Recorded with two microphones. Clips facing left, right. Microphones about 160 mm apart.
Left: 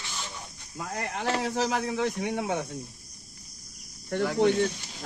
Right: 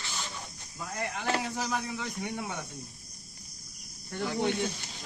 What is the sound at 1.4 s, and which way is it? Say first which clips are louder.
Speech: left 6 dB; 85° left.